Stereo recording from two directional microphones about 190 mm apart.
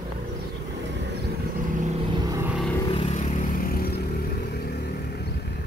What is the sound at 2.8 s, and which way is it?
Vehicle, 30° left (ahead or behind).